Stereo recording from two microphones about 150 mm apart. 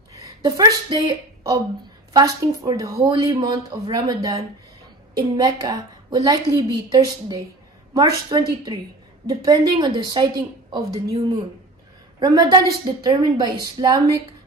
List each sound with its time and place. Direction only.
0.1 s a woman's voice: 25° right (ahead or behind)
12.2 s a woman's voice: 25° right (ahead or behind)